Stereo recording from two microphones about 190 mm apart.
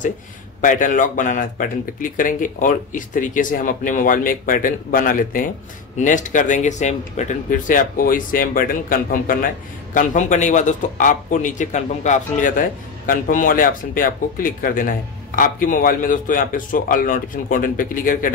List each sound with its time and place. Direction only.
0.6 s speech: 45° left (ahead or behind)